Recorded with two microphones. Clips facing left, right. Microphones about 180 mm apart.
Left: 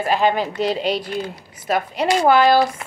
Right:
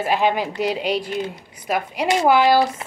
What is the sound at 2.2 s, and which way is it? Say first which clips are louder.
Speech: left 1 dB; 10° right (ahead or behind).